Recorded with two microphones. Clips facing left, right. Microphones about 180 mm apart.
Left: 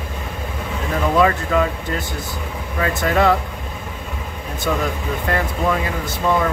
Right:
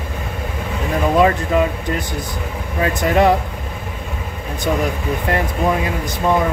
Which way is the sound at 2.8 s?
20° right (ahead or behind).